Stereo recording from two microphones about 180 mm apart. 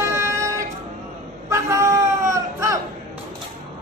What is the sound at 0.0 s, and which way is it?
Music, 15° right (ahead or behind).